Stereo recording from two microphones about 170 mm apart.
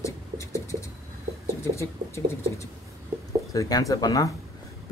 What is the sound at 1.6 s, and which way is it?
Speech, 15° left (ahead or behind).